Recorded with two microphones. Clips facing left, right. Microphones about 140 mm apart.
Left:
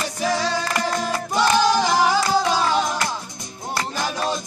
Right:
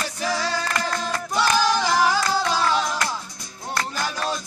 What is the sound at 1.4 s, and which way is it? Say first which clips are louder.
Music: left 3 dB; centre (ahead or behind).